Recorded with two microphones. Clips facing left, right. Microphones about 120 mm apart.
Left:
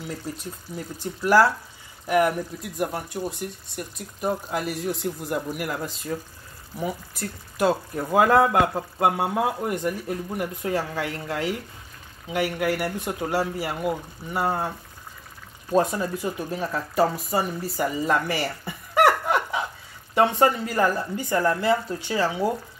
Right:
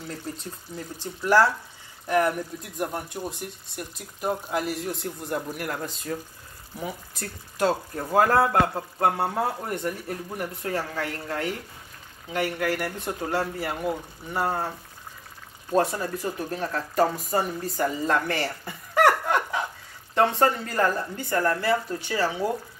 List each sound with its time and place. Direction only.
0.3 s speech: 10° left (ahead or behind)
15.7 s speech: 20° left (ahead or behind)
18.9 s laughter: 5° left (ahead or behind)
20.2 s speech: 10° left (ahead or behind)